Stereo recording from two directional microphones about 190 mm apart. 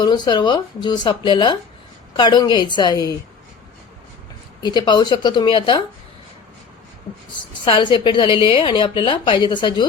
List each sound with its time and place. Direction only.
0.0 s a woman's voice: 25° left (ahead or behind)
4.6 s a woman's voice: 25° left (ahead or behind)
7.6 s a woman's voice: 25° left (ahead or behind)